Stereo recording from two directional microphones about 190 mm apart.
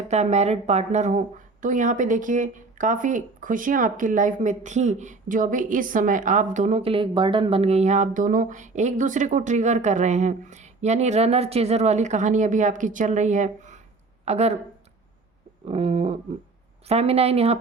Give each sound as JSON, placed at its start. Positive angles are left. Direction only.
{"t": 0.1, "sound": "speech", "side_deg": -35}
{"t": 15.6, "sound": "speech", "side_deg": -35}